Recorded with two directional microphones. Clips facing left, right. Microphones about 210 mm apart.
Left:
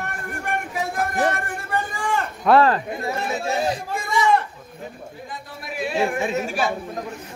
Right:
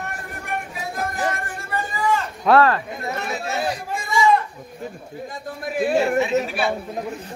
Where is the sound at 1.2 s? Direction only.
60° left (ahead or behind).